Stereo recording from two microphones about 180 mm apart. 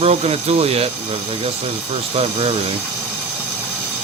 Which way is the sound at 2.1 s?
35° right (ahead or behind).